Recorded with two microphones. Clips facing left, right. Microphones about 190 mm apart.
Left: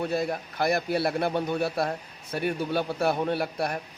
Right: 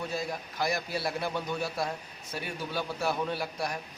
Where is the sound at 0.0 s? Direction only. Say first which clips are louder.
Left 7 dB; 60° left (ahead or behind).